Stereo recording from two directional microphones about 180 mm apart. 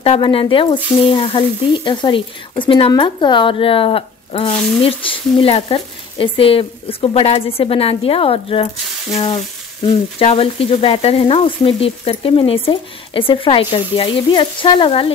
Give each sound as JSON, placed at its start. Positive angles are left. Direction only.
{"t": 0.0, "sound": "speech", "side_deg": 30}
{"t": 9.1, "sound": "sizzle", "side_deg": 30}
{"t": 10.1, "sound": "speech", "side_deg": 30}